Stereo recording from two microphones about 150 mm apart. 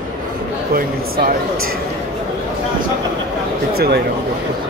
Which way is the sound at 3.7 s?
90° right.